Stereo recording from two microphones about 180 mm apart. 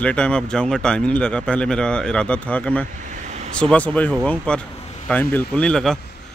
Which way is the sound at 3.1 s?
40° right (ahead or behind).